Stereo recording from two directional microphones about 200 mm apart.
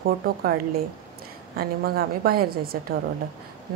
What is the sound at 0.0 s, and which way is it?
Speech, 50° right (ahead or behind).